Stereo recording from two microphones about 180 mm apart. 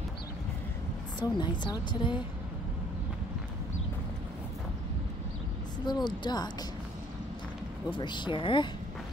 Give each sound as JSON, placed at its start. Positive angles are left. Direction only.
{"t": 1.2, "sound": "a woman's voice", "side_deg": 25}
{"t": 5.9, "sound": "a woman's voice", "side_deg": 25}
{"t": 8.0, "sound": "a woman's voice", "side_deg": 25}